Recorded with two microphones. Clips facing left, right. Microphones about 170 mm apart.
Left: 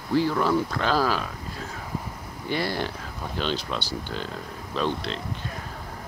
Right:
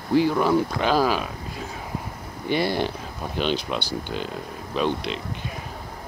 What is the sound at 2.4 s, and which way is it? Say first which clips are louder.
Speech: right 4 dB; 20° right (ahead or behind).